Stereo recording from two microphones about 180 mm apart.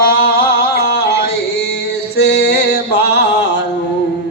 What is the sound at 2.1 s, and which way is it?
Music, 65° left (ahead or behind).